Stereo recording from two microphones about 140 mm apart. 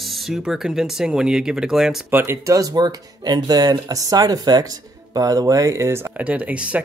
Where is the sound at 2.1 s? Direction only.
15° right (ahead or behind).